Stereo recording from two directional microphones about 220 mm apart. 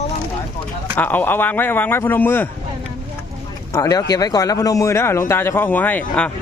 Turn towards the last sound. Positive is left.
turn(degrees=10)  # may be behind; listen again after turning